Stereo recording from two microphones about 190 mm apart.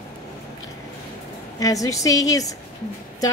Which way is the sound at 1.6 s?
15° left (ahead or behind).